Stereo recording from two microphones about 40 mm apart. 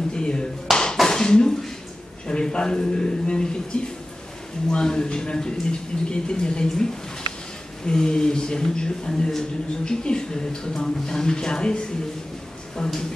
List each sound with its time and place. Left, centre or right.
0.1 s a man's voice: left
0.7 s clapping: centre
1.0 s a sound: centre
2.2 s a man's voice: centre